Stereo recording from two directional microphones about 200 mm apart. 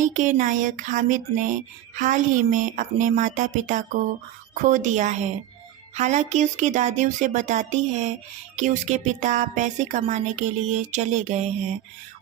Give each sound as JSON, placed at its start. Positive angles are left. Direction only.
{"t": 0.0, "sound": "music", "side_deg": -40}